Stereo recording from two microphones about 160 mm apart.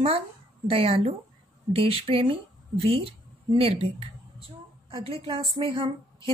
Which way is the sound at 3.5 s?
35° right (ahead or behind).